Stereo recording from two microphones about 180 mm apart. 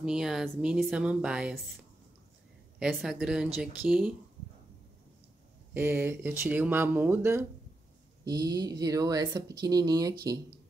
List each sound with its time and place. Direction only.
0.0 s speech: 5° right (ahead or behind)
2.8 s speech: centre (ahead or behind)
5.7 s speech: 10° right (ahead or behind)